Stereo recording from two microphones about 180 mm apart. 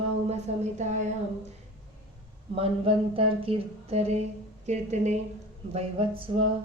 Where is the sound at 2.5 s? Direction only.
30° right (ahead or behind).